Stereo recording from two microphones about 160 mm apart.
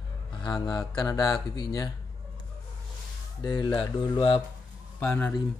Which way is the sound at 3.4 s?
25° left (ahead or behind).